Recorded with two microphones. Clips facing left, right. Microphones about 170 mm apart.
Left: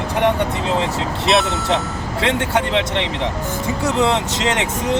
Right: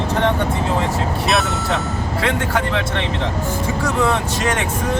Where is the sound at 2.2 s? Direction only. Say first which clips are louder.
Left 2 dB; 20° left (ahead or behind).